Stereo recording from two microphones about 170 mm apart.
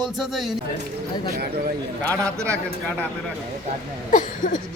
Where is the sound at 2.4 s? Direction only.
15° right (ahead or behind).